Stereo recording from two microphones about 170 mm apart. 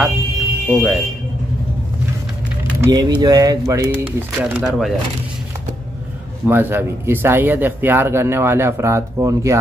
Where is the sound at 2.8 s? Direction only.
25° right (ahead or behind); by 4.9 s 5° right (ahead or behind).